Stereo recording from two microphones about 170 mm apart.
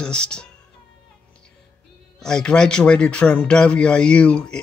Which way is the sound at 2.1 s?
5° left (ahead or behind).